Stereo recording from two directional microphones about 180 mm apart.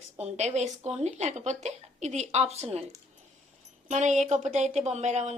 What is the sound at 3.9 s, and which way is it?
A woman's voice, 40° right (ahead or behind).